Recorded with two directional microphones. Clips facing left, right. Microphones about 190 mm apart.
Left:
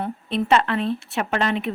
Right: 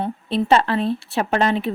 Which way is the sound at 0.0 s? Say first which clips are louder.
Right 3 dB; 35° right (ahead or behind).